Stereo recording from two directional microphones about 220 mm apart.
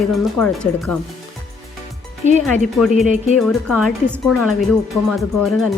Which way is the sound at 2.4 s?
Centre (ahead or behind).